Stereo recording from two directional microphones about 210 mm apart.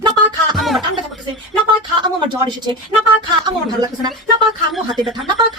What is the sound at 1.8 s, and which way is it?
A woman's voice, 20° right (ahead or behind).